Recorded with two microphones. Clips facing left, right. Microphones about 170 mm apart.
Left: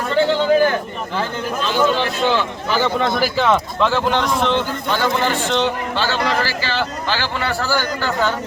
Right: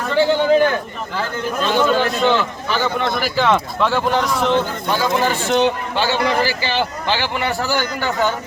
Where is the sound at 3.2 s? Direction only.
Centre (ahead or behind).